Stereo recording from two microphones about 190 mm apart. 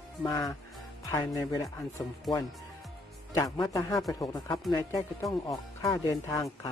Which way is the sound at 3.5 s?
20° left (ahead or behind).